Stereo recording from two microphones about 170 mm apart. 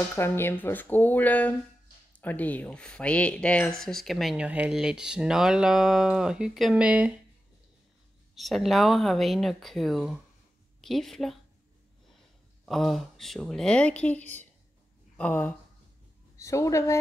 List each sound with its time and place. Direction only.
0.1 s speech: 15° left (ahead or behind); by 7.2 s 10° right (ahead or behind)
8.4 s speech: centre (ahead or behind)
12.6 s speech: centre (ahead or behind); by 16.9 s 15° left (ahead or behind)